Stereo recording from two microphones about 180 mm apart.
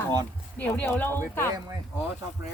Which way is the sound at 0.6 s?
10° left (ahead or behind).